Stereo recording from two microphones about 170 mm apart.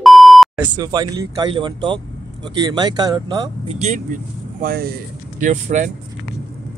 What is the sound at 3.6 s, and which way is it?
Speech, 40° right (ahead or behind).